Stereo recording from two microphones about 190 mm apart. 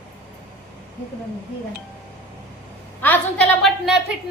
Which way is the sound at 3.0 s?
10° left (ahead or behind).